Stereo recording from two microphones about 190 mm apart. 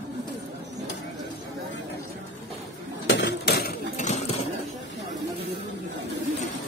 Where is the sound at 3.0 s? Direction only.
70° left (ahead or behind).